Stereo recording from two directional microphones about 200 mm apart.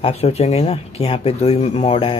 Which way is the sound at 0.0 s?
30° left (ahead or behind).